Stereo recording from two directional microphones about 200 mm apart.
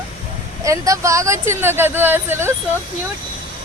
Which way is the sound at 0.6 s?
15° right (ahead or behind).